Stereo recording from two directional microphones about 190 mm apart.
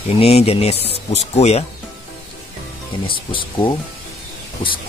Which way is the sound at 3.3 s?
25° left (ahead or behind).